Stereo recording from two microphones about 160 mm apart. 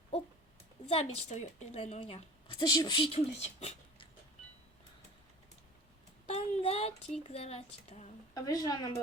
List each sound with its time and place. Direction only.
0.9 s a woman's voice: 40° left (ahead or behind)
6.2 s a sound: 40° left (ahead or behind)
7.3 s a woman's voice: 40° left (ahead or behind)
8.4 s speech: 25° left (ahead or behind)